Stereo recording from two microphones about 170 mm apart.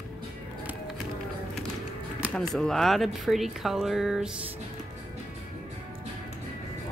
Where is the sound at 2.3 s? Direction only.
5° left (ahead or behind).